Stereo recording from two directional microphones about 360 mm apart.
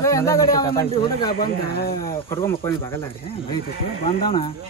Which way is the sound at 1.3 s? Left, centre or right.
Left.